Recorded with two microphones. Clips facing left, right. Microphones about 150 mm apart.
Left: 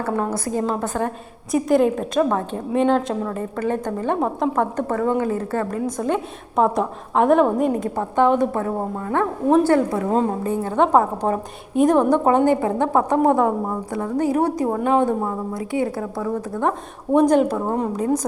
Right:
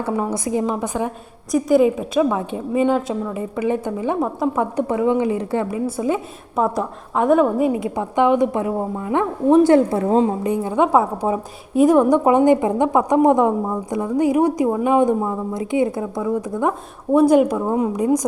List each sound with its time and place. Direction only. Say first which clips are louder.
0.3 s a woman's voice: right 2 dB; 15° right (ahead or behind)
1.5 s a woman's voice: right 2 dB; centre (ahead or behind)
5.8 s a woman's voice: right 1 dB; 5° right (ahead or behind)
9.9 s a woman's voice: right 3 dB; 30° right (ahead or behind)
10.2 s a woman's voice: right 2 dB; 15° right (ahead or behind)